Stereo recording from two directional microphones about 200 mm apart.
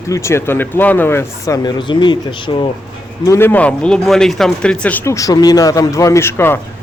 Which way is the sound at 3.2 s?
15° left (ahead or behind).